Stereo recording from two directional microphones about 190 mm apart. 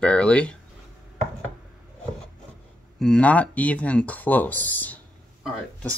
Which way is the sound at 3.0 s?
5° left (ahead or behind).